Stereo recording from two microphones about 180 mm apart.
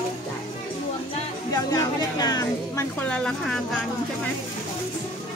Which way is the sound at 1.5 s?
20° left (ahead or behind).